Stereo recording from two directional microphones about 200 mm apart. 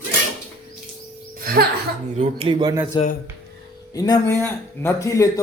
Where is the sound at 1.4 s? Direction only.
50° right (ahead or behind).